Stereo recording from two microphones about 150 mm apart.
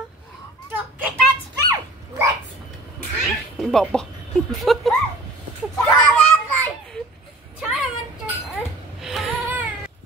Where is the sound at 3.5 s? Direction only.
5° left (ahead or behind).